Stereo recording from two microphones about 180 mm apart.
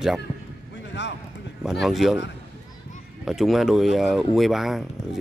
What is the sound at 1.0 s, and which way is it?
Speech, 70° left (ahead or behind).